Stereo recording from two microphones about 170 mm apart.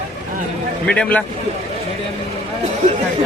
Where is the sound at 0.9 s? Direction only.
5° left (ahead or behind).